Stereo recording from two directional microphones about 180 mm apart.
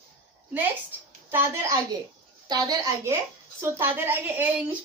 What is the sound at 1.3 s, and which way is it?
Speech, 10° right (ahead or behind).